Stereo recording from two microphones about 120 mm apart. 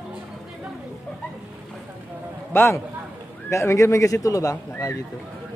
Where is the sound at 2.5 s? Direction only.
20° left (ahead or behind).